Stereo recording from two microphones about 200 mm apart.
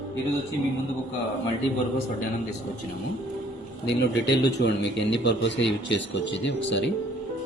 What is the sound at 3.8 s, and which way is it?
A man's voice, 60° left (ahead or behind).